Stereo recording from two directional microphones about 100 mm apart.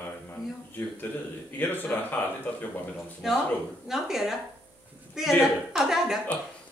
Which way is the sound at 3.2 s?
Centre (ahead or behind).